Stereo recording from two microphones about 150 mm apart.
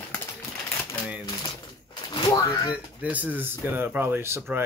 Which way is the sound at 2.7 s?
10° right (ahead or behind).